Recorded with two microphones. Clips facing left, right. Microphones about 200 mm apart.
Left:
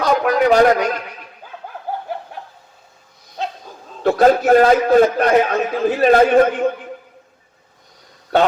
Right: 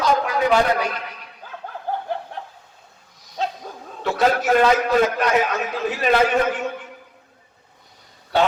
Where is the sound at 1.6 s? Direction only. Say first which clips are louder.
Even; 10° left (ahead or behind).